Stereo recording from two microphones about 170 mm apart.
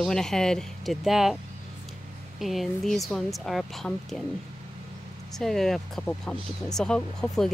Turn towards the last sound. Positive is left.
turn(degrees=5)  # may be behind; listen again after turning